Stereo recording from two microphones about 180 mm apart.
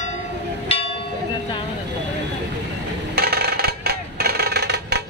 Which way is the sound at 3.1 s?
60° right (ahead or behind).